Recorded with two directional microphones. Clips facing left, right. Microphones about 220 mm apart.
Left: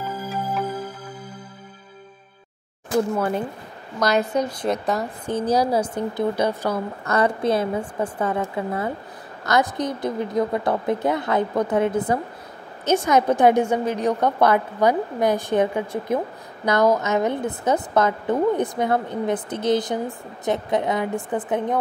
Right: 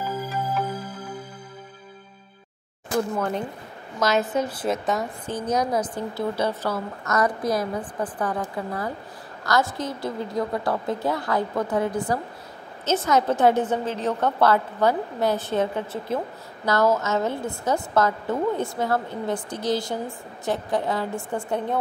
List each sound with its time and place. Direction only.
3.2 s a woman's voice: 5° left (ahead or behind)
5.3 s a woman's voice: 30° left (ahead or behind)
5.9 s a woman's voice: 15° left (ahead or behind)
7.1 s a woman's voice: 30° left (ahead or behind)